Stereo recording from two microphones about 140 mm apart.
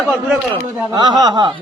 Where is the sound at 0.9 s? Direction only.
30° right (ahead or behind).